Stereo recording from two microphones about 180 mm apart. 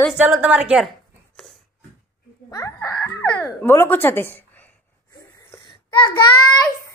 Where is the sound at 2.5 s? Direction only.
20° left (ahead or behind).